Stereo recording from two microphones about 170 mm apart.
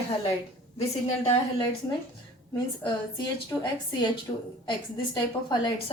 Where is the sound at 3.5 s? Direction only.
25° left (ahead or behind).